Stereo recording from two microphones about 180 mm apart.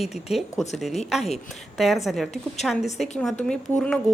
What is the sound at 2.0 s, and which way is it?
A woman's voice, centre (ahead or behind).